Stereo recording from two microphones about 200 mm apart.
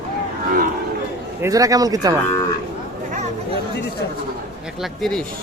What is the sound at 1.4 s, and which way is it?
Speech, 15° right (ahead or behind).